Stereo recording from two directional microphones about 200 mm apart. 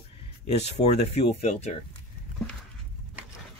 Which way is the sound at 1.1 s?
35° left (ahead or behind).